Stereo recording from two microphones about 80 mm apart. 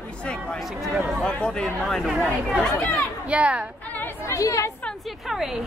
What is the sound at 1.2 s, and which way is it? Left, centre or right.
Speech, centre.